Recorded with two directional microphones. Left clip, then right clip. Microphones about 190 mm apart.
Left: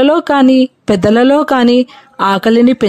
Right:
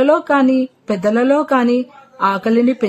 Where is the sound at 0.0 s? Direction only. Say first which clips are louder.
Left 3 dB; 45° left (ahead or behind).